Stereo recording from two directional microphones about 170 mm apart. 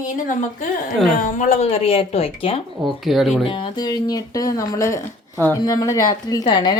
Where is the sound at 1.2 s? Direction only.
45° left (ahead or behind).